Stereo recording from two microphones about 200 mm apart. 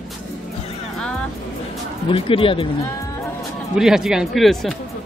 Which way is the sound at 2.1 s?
25° left (ahead or behind).